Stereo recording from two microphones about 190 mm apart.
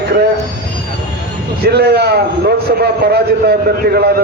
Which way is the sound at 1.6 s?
60° right (ahead or behind).